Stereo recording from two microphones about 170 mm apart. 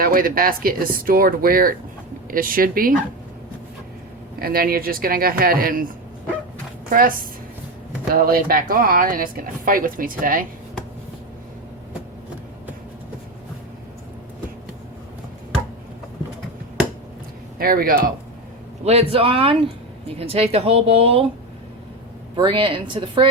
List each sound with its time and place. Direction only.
0.0 s speech: 55° right (ahead or behind)
4.4 s speech: 60° right (ahead or behind)
6.9 s speech: 55° right (ahead or behind)
17.6 s speech: 60° right (ahead or behind)
18.9 s speech: 35° right (ahead or behind)
22.4 s a woman's voice: 30° right (ahead or behind)